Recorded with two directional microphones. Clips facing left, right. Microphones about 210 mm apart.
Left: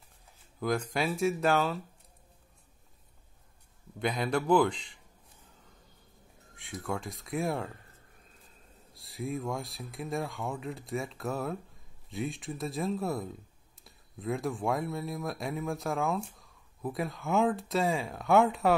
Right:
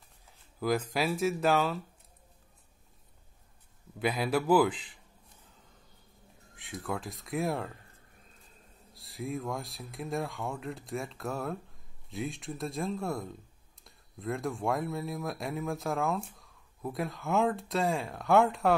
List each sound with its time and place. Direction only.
0.6 s speech: centre (ahead or behind)
4.0 s speech: 5° right (ahead or behind)
6.5 s speech: centre (ahead or behind)
8.9 s speech: centre (ahead or behind)